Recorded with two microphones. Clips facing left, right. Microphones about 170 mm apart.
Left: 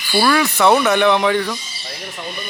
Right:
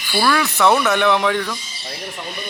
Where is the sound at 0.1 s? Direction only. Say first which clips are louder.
Left 3 dB; 5° left (ahead or behind).